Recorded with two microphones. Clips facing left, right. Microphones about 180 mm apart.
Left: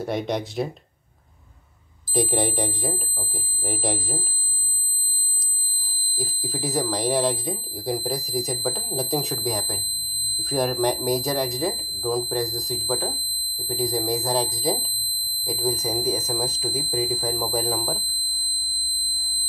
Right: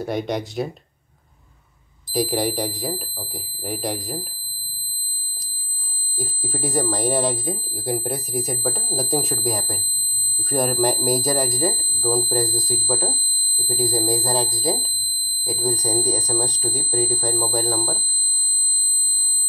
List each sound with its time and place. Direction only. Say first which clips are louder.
0.1 s speech: right 1 dB; centre (ahead or behind)
2.1 s speech: right 2 dB; centre (ahead or behind)
6.1 s speech: right 1 dB; centre (ahead or behind)